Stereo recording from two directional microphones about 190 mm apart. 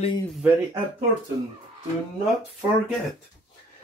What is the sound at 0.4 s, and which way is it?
Speech, 10° right (ahead or behind).